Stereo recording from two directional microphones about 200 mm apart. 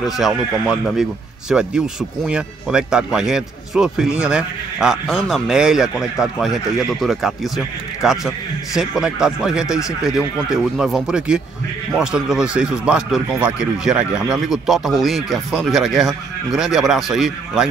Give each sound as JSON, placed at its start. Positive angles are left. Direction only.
{"t": 0.0, "sound": "speech", "side_deg": 0}